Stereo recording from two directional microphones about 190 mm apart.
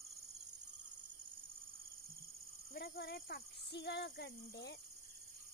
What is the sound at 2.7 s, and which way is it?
Speech, 65° left (ahead or behind).